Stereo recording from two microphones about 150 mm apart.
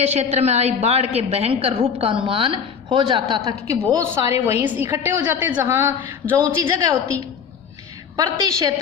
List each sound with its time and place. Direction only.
0.0 s a woman's voice: 45° right (ahead or behind); by 5.8 s 15° right (ahead or behind)
6.3 s a woman's voice: 25° right (ahead or behind)
8.1 s a woman's voice: 25° right (ahead or behind)